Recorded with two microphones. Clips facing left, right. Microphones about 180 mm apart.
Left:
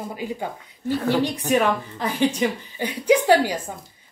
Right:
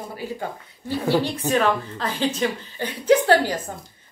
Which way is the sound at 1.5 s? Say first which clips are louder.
Right 1 dB; 15° left (ahead or behind).